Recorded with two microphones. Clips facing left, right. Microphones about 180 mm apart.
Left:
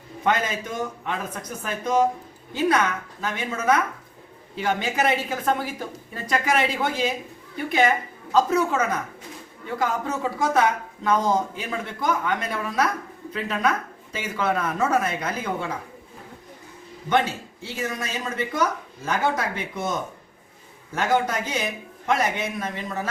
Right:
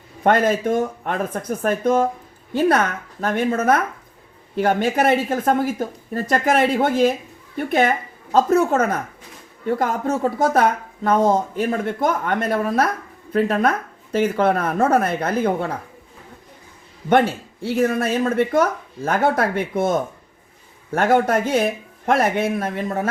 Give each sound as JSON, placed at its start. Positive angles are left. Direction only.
{"t": 0.2, "sound": "a woman's voice", "side_deg": -55}
{"t": 17.1, "sound": "speech", "side_deg": -55}